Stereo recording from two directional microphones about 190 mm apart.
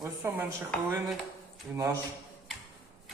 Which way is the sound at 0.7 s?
Centre (ahead or behind).